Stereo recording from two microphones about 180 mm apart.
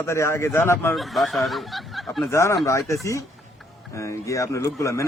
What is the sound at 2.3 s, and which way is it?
Speech, 15° left (ahead or behind).